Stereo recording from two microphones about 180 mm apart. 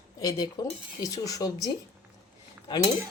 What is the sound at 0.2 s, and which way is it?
A woman's voice, 20° left (ahead or behind).